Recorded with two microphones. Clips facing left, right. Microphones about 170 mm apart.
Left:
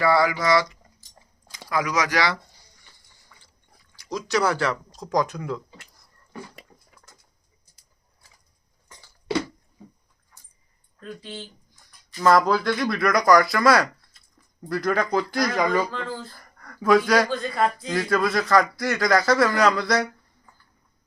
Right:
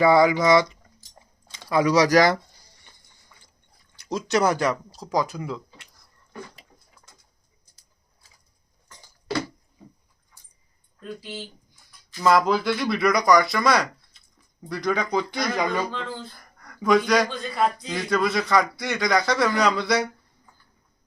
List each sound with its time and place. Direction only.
0.0 s speech: 20° right (ahead or behind); by 2.4 s 45° right (ahead or behind)
3.9 s speech: 25° right (ahead or behind)
4.9 s speech: 5° right (ahead or behind)
11.2 s speech: 5° right (ahead or behind)